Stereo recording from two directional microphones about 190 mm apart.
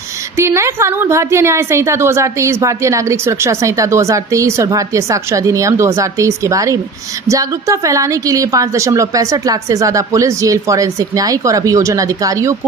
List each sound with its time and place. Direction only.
0.3 s a woman's voice: 15° right (ahead or behind)